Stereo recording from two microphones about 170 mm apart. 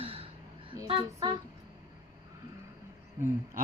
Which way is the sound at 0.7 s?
30° right (ahead or behind).